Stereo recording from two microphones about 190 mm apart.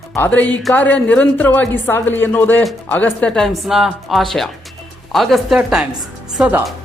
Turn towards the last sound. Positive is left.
turn(degrees=-5)  # may be behind; listen again after turning